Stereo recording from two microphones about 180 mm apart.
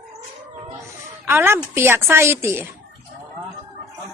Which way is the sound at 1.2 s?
10° right (ahead or behind).